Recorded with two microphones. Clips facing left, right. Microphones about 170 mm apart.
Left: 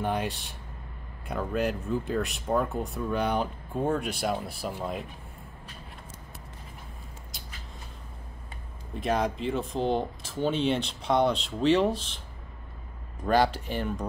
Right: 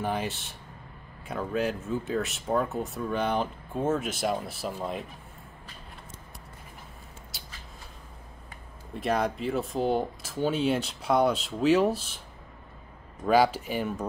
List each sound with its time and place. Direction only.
0.0 s speech: centre (ahead or behind)
8.9 s speech: centre (ahead or behind)
13.2 s speech: 5° right (ahead or behind)